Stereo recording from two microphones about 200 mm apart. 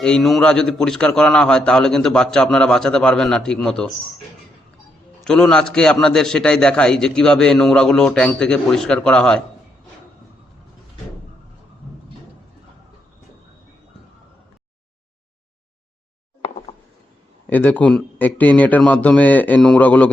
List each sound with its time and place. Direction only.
0.0 s a man's voice: centre (ahead or behind)
5.2 s a man's voice: 5° left (ahead or behind)
17.5 s a man's voice: 10° left (ahead or behind)